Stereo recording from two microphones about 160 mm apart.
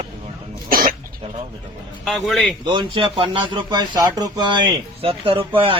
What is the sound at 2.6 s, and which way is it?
Speech, 30° right (ahead or behind).